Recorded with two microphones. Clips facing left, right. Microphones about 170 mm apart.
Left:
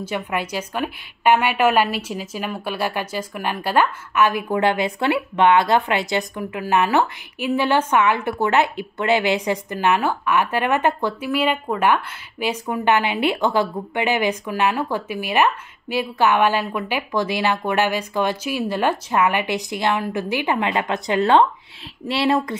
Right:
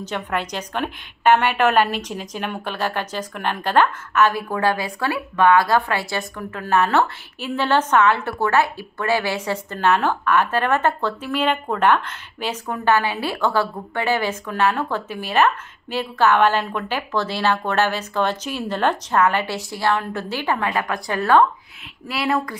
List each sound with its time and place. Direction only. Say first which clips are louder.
0.0 s a woman's voice: left 1 dB; 10° left (ahead or behind); by 22.6 s 25° left (ahead or behind)